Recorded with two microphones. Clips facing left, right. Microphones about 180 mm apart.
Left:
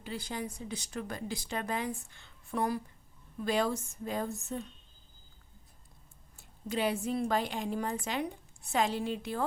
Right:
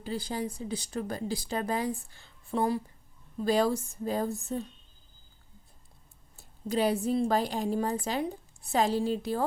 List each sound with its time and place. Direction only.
0.0 s a woman's voice: 35° right (ahead or behind)
6.3 s a woman's voice: 35° right (ahead or behind)